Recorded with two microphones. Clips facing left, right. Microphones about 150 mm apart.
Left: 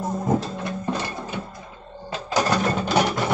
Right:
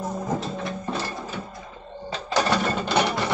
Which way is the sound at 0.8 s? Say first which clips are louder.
Left 2 dB; 15° left (ahead or behind).